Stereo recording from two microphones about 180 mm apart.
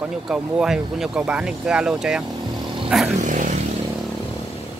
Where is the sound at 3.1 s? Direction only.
45° right (ahead or behind).